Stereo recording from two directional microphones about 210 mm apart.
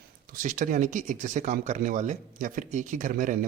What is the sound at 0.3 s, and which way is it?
A man's voice, 40° right (ahead or behind).